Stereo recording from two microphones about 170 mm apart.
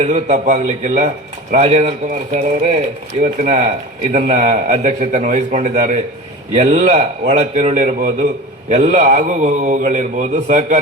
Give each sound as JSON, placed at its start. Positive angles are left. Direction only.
{"t": 0.0, "sound": "speech", "side_deg": -45}